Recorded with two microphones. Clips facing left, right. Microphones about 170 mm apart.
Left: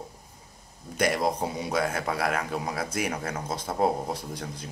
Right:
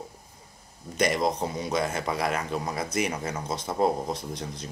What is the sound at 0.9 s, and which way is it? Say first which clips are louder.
A man's voice: even; 5° left (ahead or behind).